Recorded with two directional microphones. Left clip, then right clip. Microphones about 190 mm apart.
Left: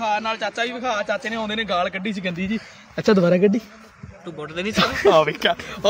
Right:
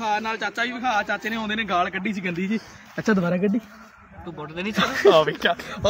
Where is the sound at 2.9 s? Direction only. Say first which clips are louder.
Left 6 dB; 50° left (ahead or behind).